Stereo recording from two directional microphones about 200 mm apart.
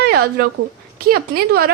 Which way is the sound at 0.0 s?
50° right (ahead or behind).